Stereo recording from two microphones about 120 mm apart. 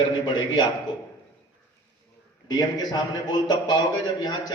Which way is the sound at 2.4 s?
35° left (ahead or behind).